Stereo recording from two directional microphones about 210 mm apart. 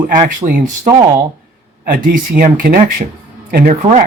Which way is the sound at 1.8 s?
40° right (ahead or behind).